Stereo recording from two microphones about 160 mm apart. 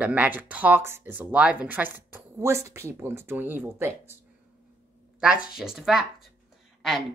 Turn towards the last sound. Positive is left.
turn(degrees=0)  # may be behind; listen again after turning